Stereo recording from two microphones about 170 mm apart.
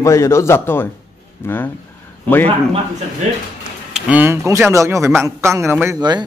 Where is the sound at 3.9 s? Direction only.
10° right (ahead or behind).